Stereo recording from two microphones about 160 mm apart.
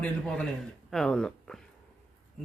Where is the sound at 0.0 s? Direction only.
5° left (ahead or behind).